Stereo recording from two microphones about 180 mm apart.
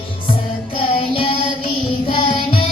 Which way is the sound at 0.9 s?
30° left (ahead or behind).